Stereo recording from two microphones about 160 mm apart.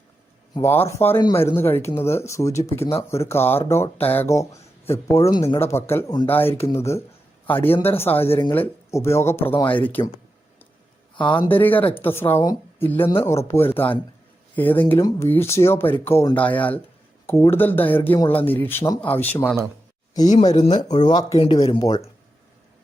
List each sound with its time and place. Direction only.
0.5 s speech: 15° left (ahead or behind)
11.3 s speech: 10° left (ahead or behind)
14.9 s speech: 25° left (ahead or behind)
20.5 s speech: 30° left (ahead or behind)